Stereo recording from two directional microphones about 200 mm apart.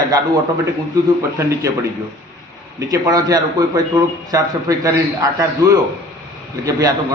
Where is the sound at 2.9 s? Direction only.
15° right (ahead or behind).